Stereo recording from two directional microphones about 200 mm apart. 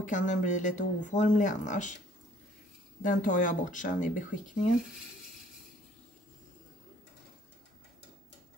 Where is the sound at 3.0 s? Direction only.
40° left (ahead or behind).